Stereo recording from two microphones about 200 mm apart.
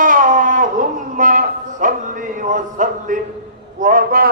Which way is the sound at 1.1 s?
40° right (ahead or behind).